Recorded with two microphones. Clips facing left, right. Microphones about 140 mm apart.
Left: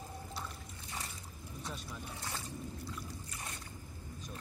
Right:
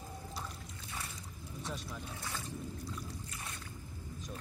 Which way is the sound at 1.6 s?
Centre (ahead or behind).